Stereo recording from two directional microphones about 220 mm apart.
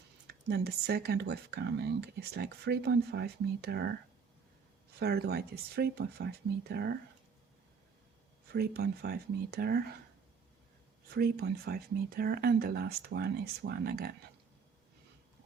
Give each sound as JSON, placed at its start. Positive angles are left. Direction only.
{"t": 0.3, "sound": "speech", "side_deg": -45}
{"t": 4.9, "sound": "speech", "side_deg": -45}
{"t": 8.5, "sound": "speech", "side_deg": -45}
{"t": 11.1, "sound": "speech", "side_deg": -45}